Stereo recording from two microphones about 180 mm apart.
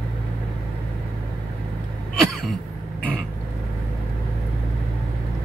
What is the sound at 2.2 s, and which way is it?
Throat clearing, centre (ahead or behind).